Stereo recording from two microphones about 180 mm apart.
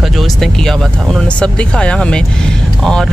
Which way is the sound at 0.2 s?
Centre (ahead or behind).